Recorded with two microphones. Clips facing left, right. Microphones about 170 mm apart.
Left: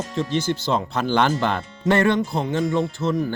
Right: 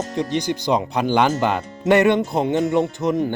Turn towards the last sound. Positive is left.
turn(degrees=-15)  # may be behind; listen again after turning